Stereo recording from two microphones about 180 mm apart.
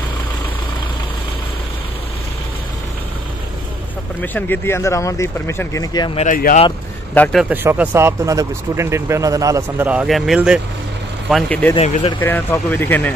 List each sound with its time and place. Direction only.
4.2 s speech: 10° left (ahead or behind)
6.1 s speech: 45° left (ahead or behind)
7.4 s speech: 10° right (ahead or behind); by 13.1 s 10° left (ahead or behind)